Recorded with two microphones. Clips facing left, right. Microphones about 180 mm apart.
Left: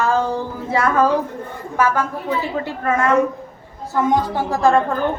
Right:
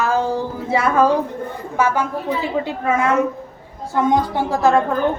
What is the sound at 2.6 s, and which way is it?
Speech, 10° right (ahead or behind).